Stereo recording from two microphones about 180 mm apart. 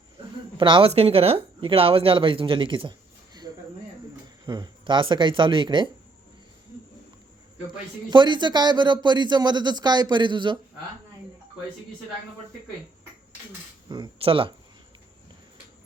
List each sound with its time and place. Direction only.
0.5 s speech: 30° right (ahead or behind)
4.4 s speech: 20° right (ahead or behind)
8.1 s speech: 25° right (ahead or behind)
13.8 s speech: 25° right (ahead or behind)